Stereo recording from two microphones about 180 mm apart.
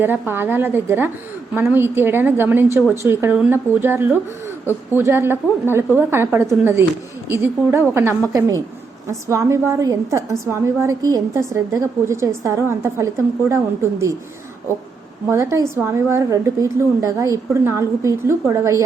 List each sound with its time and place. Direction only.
0.0 s a woman's voice: 10° right (ahead or behind)
15.3 s a woman's voice: 15° right (ahead or behind)